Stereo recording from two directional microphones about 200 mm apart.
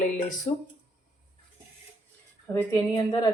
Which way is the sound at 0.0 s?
40° left (ahead or behind).